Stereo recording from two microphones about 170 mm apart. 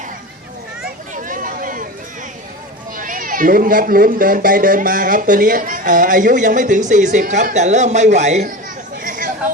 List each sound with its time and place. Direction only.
1.1 s chatter: 50° right (ahead or behind)
2.9 s speech: 55° right (ahead or behind)
9.0 s chatter: 50° right (ahead or behind)